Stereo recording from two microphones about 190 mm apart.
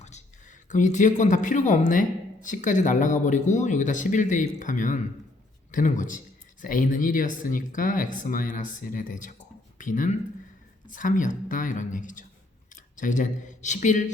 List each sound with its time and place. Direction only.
0.0 s speech: 40° left (ahead or behind)